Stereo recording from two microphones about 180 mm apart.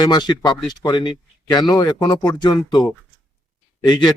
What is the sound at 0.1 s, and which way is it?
Speech, 25° left (ahead or behind).